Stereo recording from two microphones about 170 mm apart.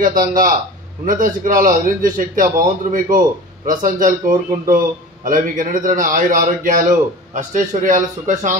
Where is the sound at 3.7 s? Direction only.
50° right (ahead or behind).